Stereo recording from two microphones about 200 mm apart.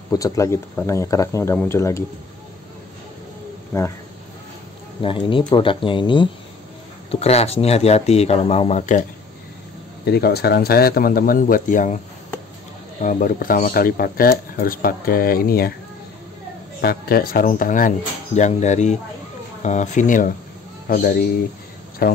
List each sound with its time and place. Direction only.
0.1 s speech: 15° left (ahead or behind)
5.0 s speech: 25° left (ahead or behind)
10.0 s speech: 55° left (ahead or behind)
13.0 s speech: 40° left (ahead or behind)
16.8 s speech: 50° left (ahead or behind)